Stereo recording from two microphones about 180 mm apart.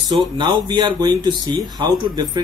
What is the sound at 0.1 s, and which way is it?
Speech, 25° right (ahead or behind).